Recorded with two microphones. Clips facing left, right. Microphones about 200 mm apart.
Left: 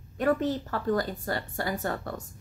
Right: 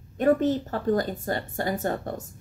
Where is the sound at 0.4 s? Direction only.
20° right (ahead or behind).